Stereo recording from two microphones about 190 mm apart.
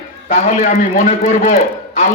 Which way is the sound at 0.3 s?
40° left (ahead or behind).